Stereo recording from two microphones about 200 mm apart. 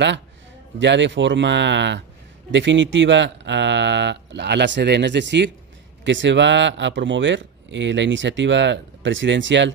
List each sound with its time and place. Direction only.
0.7 s speech: 65° right (ahead or behind)